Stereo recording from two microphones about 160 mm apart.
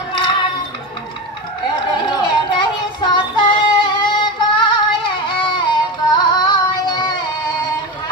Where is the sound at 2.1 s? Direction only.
25° left (ahead or behind).